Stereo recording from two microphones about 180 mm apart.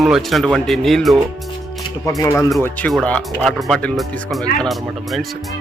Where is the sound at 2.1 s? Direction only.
20° left (ahead or behind).